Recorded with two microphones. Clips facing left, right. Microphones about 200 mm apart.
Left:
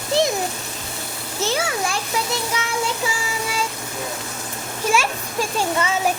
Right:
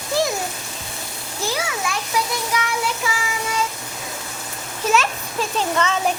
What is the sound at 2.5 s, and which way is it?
Music, 25° left (ahead or behind).